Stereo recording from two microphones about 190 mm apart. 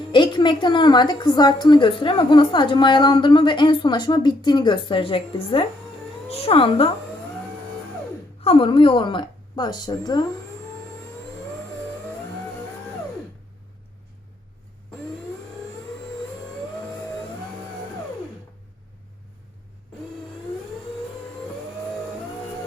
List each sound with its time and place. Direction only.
0.1 s a woman's voice: 25° left (ahead or behind)
8.4 s a woman's voice: 30° left (ahead or behind)